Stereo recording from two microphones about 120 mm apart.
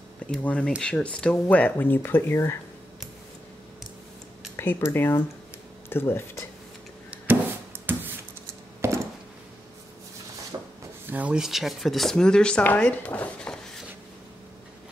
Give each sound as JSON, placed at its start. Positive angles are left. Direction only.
{"t": 0.3, "sound": "speech", "side_deg": 10}
{"t": 4.6, "sound": "speech", "side_deg": 20}
{"t": 7.2, "sound": "a sound", "side_deg": -15}
{"t": 10.5, "sound": "rub", "side_deg": -25}
{"t": 11.1, "sound": "speech", "side_deg": -10}